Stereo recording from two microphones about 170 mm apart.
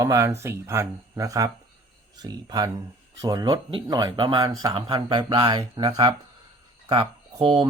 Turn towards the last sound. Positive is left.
turn(degrees=-30)  # may be behind; listen again after turning